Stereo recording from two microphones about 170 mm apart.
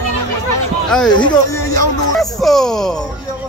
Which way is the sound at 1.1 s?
25° left (ahead or behind).